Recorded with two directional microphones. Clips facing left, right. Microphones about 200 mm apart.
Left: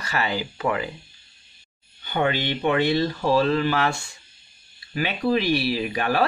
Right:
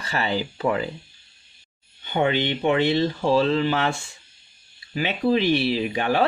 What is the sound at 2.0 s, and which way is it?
Speech, 25° right (ahead or behind).